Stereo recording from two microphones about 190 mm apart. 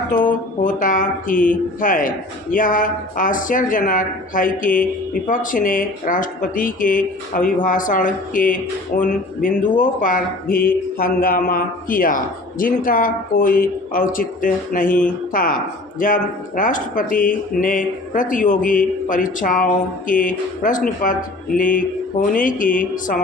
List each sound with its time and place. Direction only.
0.1 s speech: 45° left (ahead or behind)